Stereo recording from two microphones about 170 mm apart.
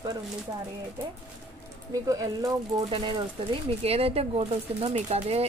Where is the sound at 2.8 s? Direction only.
30° right (ahead or behind).